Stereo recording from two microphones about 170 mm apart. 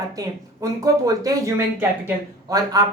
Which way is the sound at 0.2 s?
20° right (ahead or behind).